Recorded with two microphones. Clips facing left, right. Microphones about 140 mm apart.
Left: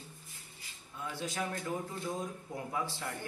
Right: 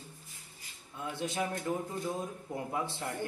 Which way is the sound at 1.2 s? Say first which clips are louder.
Right 3 dB; 25° right (ahead or behind).